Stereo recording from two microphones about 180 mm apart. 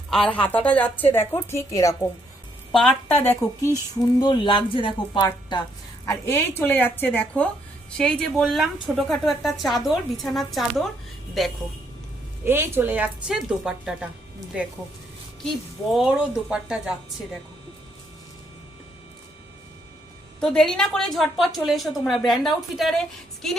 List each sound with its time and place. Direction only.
0.1 s a woman's voice: 5° left (ahead or behind)
4.2 s a woman's voice: 25° left (ahead or behind)
6.1 s a woman's voice: 15° left (ahead or behind)
12.5 s a woman's voice: 10° right (ahead or behind)
15.9 s a woman's voice: 5° right (ahead or behind)
20.4 s a woman's voice: 5° left (ahead or behind)